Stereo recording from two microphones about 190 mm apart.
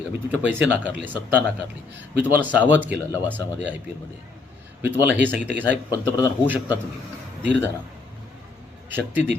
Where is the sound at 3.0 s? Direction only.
15° left (ahead or behind).